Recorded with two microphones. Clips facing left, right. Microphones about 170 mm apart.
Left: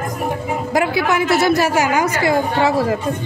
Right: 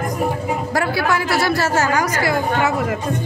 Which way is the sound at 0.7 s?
20° left (ahead or behind).